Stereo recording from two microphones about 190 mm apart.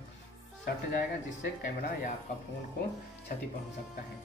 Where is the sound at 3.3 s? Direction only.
45° left (ahead or behind).